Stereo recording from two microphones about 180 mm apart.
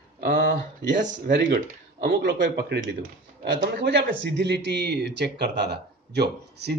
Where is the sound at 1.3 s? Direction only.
60° right (ahead or behind).